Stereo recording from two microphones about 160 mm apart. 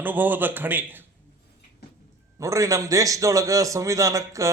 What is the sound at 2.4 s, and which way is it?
A man's voice, 20° right (ahead or behind).